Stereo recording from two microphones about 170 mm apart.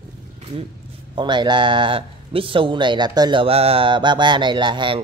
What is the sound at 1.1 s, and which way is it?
Speech, 25° right (ahead or behind).